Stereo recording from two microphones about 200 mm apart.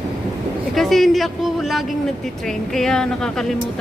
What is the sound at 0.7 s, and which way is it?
A woman's voice, centre (ahead or behind).